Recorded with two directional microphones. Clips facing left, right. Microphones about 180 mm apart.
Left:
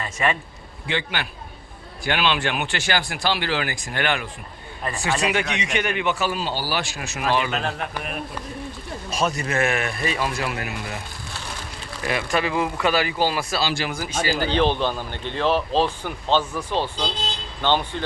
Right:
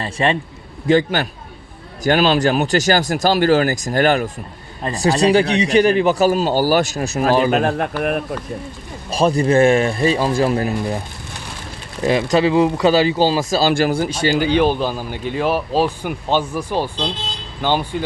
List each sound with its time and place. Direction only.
0.0 s speech: 30° right (ahead or behind)
0.9 s a man's voice: 40° right (ahead or behind)
9.0 s a man's voice: 30° right (ahead or behind)
12.0 s speech: 30° right (ahead or behind)
13.4 s speech: 45° right (ahead or behind)
13.9 s speech: 25° right (ahead or behind)
14.3 s speech: 15° right (ahead or behind)